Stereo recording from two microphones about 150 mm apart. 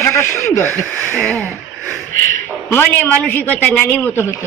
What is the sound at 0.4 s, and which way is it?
Speech, 20° left (ahead or behind).